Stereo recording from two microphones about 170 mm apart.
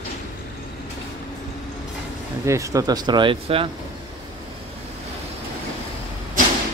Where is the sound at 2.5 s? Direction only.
20° right (ahead or behind).